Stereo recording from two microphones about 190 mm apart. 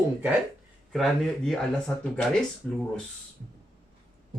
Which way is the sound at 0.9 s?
Centre (ahead or behind).